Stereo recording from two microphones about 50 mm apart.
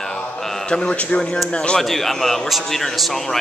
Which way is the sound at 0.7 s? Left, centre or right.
Centre.